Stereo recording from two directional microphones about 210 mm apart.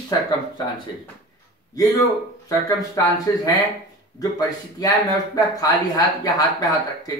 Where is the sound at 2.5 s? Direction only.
15° left (ahead or behind).